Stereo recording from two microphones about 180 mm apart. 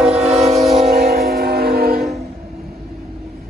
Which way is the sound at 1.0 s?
60° right (ahead or behind).